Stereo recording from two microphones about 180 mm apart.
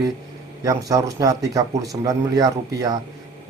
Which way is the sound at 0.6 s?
20° right (ahead or behind).